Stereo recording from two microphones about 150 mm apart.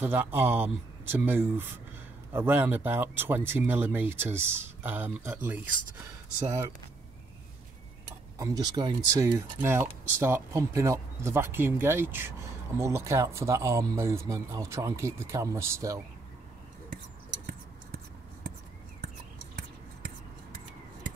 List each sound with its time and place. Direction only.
0.0 s speech: 15° right (ahead or behind)
8.4 s speech: 25° right (ahead or behind)